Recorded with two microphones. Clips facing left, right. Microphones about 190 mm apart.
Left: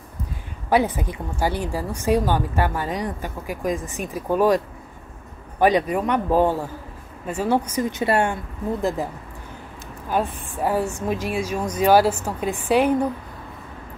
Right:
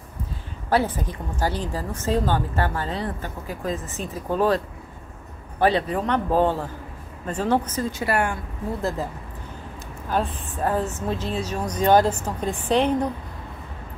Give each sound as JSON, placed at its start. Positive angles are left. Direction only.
{"t": 0.7, "sound": "a woman's voice", "side_deg": 15}
{"t": 5.6, "sound": "a woman's voice", "side_deg": 15}